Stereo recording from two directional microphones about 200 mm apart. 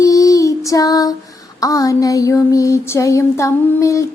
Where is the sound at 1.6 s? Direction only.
15° left (ahead or behind).